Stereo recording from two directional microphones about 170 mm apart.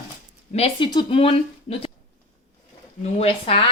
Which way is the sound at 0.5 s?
30° left (ahead or behind).